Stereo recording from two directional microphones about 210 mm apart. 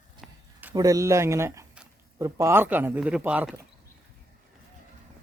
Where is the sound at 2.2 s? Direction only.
15° right (ahead or behind).